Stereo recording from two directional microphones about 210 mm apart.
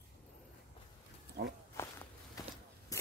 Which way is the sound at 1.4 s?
50° right (ahead or behind).